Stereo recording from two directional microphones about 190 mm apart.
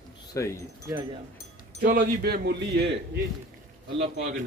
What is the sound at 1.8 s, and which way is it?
Speech, 50° right (ahead or behind).